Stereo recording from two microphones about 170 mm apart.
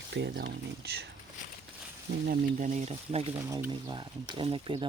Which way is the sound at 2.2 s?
50° right (ahead or behind).